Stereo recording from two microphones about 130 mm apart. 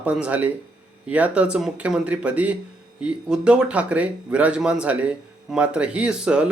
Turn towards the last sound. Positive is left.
turn(degrees=-10)  # may be behind; listen again after turning